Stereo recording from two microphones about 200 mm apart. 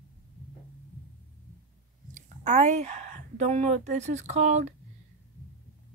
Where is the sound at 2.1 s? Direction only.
35° right (ahead or behind).